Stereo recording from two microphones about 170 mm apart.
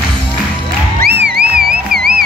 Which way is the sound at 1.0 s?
70° right (ahead or behind).